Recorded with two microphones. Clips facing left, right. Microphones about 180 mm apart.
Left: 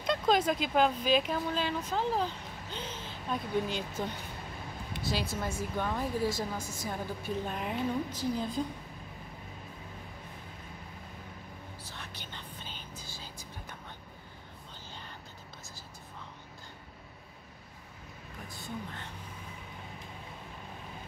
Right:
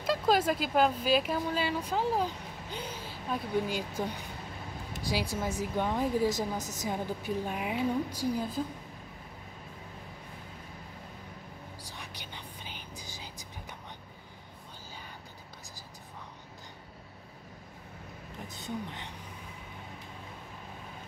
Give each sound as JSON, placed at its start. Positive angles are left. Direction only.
{"t": 0.0, "sound": "a woman's voice", "side_deg": -5}
{"t": 6.6, "sound": "a woman's voice", "side_deg": -40}
{"t": 6.9, "sound": "a woman's voice", "side_deg": -15}
{"t": 11.8, "sound": "whispering", "side_deg": -15}
{"t": 18.5, "sound": "a sound", "side_deg": -20}